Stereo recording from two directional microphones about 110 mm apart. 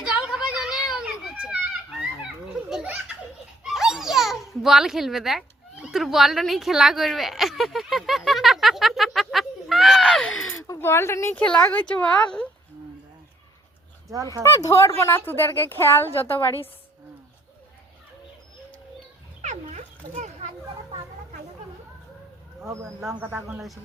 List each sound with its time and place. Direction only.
0.3 s children playing: 5° right (ahead or behind)
2.6 s belly laugh: 10° right (ahead or behind)
3.6 s a sound: 5° right (ahead or behind)
10.5 s speech: 20° left (ahead or behind)
11.4 s speech: 10° left (ahead or behind)
14.4 s a woman's voice: 25° left (ahead or behind)
16.2 s a woman's voice: 60° left (ahead or behind)
19.4 s dog: 90° right
22.6 s a man's voice: 25° right (ahead or behind)